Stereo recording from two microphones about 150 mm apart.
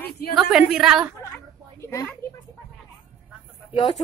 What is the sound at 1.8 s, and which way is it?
Speech, 20° left (ahead or behind).